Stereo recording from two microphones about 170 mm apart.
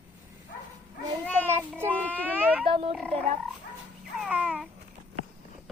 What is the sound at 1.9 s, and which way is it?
Baby cry, 10° left (ahead or behind).